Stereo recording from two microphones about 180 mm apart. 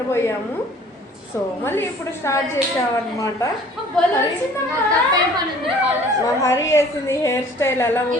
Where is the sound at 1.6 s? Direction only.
15° left (ahead or behind).